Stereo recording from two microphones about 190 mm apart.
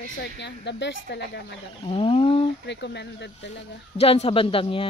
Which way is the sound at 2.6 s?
65° left (ahead or behind).